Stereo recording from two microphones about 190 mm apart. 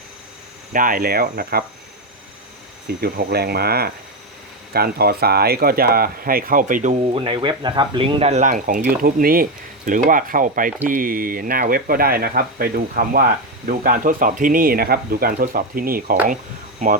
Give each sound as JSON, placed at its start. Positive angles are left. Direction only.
{"t": 0.7, "sound": "speech", "side_deg": -45}
{"t": 3.0, "sound": "speech", "side_deg": -55}
{"t": 7.0, "sound": "speech", "side_deg": -30}